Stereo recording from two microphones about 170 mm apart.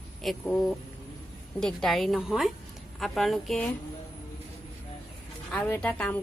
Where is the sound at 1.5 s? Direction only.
Centre (ahead or behind).